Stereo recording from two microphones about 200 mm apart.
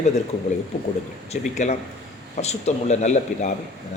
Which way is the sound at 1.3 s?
35° left (ahead or behind).